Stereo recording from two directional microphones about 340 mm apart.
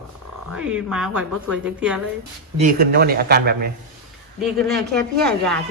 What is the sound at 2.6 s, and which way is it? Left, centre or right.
A man's voice, right.